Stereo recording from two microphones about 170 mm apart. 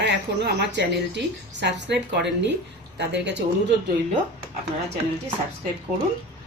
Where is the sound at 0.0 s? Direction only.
85° right.